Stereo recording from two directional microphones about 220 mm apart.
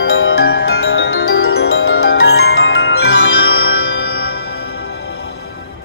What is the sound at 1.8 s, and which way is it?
Glockenspiel, 70° left (ahead or behind).